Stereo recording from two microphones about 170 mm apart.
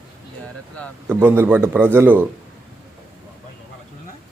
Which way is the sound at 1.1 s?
15° right (ahead or behind).